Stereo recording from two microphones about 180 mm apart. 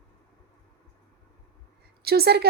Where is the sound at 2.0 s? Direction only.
60° right (ahead or behind).